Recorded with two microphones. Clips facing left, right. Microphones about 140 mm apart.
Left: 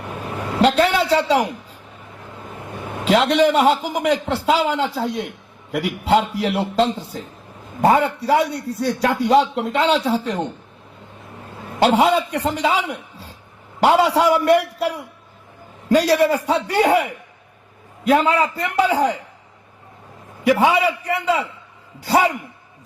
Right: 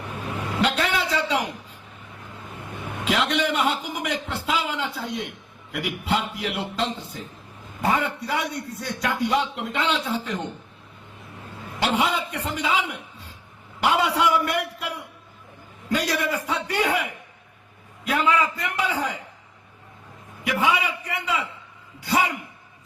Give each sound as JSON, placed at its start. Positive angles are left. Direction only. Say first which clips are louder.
{"t": 0.3, "sound": "vehicle", "louder": "left 7 dB", "side_deg": 35}
{"t": 2.8, "sound": "a man's voice", "louder": "left 7 dB", "side_deg": 35}
{"t": 11.7, "sound": "a man's voice", "louder": "left 8 dB", "side_deg": 40}
{"t": 13.8, "sound": "a man's voice", "louder": "left 7 dB", "side_deg": 35}
{"t": 18.1, "sound": "a man's voice", "louder": "left 6 dB", "side_deg": 35}
{"t": 20.4, "sound": "a man's voice", "louder": "left 8 dB", "side_deg": 40}